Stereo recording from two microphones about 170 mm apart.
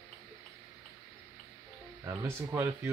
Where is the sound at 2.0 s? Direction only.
15° right (ahead or behind).